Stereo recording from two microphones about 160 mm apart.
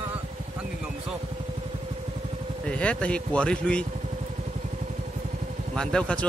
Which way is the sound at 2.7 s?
5° left (ahead or behind).